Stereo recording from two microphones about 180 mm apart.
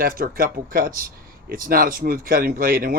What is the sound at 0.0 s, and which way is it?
Speech, 55° right (ahead or behind).